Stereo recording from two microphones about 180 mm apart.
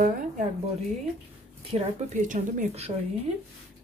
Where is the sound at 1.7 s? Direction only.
45° right (ahead or behind).